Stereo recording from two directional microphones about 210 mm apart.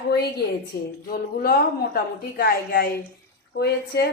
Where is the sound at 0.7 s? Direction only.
45° left (ahead or behind).